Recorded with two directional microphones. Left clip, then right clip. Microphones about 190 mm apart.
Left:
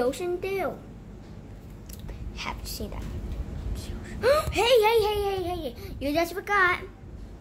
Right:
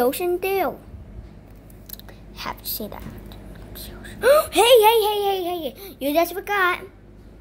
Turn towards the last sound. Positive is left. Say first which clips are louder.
# right 2 dB
turn(degrees=-15)  # may be behind; listen again after turning